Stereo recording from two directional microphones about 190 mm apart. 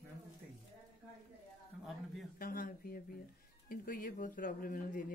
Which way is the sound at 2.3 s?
50° left (ahead or behind).